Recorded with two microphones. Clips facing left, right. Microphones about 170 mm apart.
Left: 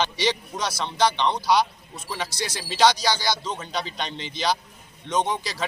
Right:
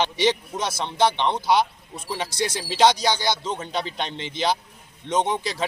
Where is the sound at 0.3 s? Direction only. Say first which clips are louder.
Right 3 dB; 20° right (ahead or behind).